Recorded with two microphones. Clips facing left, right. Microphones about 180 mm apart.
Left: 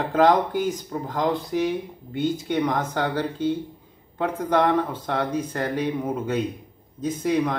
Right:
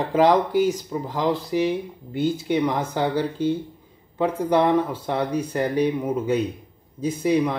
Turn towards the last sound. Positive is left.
turn(degrees=-10)  # may be behind; listen again after turning